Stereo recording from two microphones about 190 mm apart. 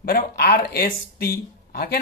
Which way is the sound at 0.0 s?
55° left (ahead or behind).